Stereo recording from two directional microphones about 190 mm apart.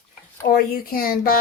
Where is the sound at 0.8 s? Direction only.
50° left (ahead or behind).